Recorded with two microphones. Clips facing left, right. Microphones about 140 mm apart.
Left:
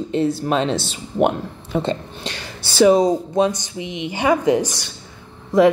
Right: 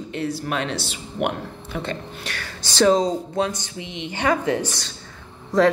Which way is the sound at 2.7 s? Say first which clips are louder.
Left 4 dB; 10° left (ahead or behind).